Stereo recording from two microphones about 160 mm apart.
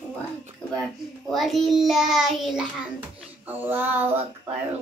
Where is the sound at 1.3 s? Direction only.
Centre (ahead or behind).